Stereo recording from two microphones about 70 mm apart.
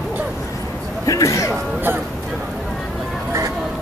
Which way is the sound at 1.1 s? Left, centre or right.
Left.